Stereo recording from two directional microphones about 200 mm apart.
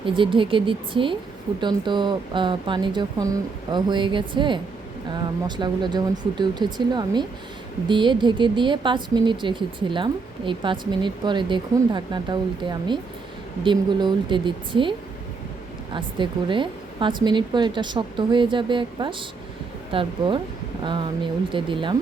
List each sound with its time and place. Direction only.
0.0 s speech: 25° right (ahead or behind)